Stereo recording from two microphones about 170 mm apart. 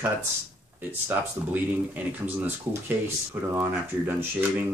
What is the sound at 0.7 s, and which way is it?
Speech, 10° right (ahead or behind).